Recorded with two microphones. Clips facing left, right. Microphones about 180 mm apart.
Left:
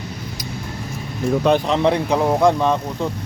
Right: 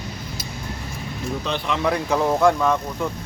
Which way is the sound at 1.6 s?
30° left (ahead or behind).